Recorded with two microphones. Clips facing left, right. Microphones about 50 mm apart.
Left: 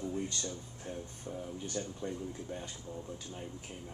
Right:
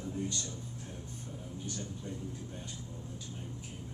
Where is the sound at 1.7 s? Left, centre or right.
Left.